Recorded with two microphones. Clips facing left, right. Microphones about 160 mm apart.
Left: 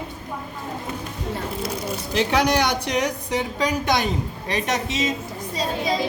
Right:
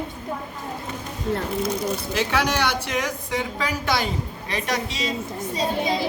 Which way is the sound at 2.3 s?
15° left (ahead or behind).